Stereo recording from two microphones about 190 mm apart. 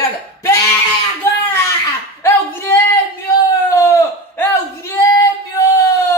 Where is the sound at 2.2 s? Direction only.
10° left (ahead or behind).